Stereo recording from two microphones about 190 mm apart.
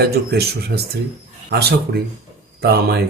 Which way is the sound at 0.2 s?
55° right (ahead or behind).